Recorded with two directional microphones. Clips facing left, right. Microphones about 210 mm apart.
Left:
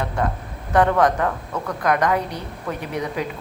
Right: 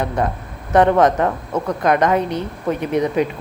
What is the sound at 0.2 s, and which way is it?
A woman's voice, 20° right (ahead or behind).